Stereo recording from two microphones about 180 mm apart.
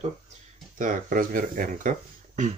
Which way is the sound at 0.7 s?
50° right (ahead or behind).